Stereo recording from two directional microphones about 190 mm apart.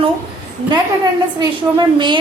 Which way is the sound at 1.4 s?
25° right (ahead or behind).